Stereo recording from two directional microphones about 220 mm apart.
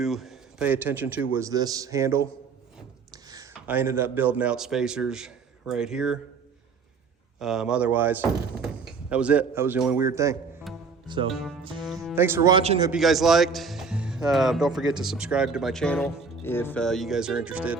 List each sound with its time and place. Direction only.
0.0 s a man's voice: centre (ahead or behind)
7.3 s speech: centre (ahead or behind)
10.7 s music: centre (ahead or behind)
11.3 s a man's voice: centre (ahead or behind)
11.6 s speech: 20° right (ahead or behind)
12.1 s a man's voice: 10° right (ahead or behind); by 12.9 s 25° right (ahead or behind)
12.9 s a man's voice: centre (ahead or behind)
16.4 s a man's voice: 10° left (ahead or behind); by 17.7 s 5° right (ahead or behind)